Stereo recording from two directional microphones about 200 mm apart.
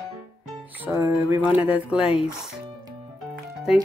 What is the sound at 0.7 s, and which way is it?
Music, 10° right (ahead or behind).